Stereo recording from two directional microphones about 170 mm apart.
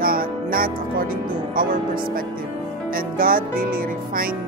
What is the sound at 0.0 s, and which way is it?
Speech, 55° right (ahead or behind).